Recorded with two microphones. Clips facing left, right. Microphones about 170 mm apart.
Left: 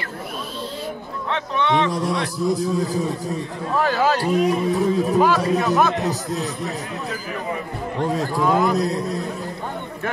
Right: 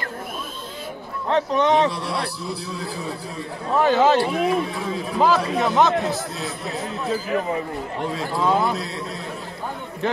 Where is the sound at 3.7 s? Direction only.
20° right (ahead or behind).